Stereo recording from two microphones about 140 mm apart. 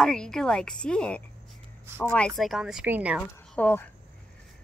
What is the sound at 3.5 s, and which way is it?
Speech, 10° left (ahead or behind).